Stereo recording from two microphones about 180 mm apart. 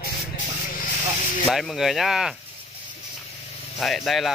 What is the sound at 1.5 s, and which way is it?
Speech, centre (ahead or behind).